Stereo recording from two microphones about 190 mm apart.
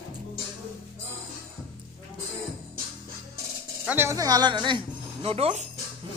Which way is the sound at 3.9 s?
15° right (ahead or behind).